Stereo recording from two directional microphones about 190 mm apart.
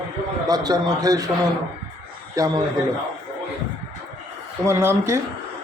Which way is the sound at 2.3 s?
20° right (ahead or behind).